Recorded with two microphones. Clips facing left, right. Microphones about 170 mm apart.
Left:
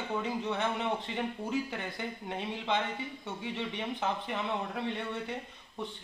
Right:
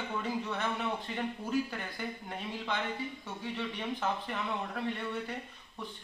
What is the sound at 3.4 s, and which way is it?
Speech, 20° left (ahead or behind).